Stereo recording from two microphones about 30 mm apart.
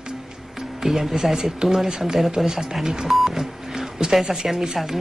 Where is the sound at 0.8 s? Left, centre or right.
Centre.